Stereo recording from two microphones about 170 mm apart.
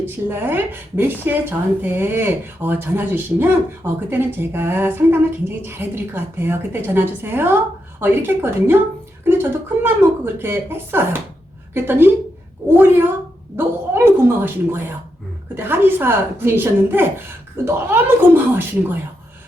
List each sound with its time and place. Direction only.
0.0 s a woman's voice: 15° right (ahead or behind)